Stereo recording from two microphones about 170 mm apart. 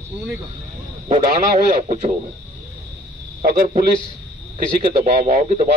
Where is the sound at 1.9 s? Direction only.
45° right (ahead or behind).